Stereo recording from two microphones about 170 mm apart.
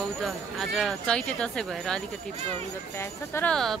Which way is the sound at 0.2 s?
Centre (ahead or behind).